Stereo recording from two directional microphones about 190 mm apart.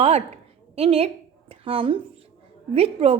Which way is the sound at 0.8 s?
30° right (ahead or behind).